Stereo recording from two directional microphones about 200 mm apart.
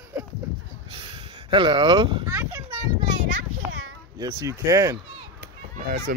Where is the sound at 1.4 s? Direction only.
25° right (ahead or behind).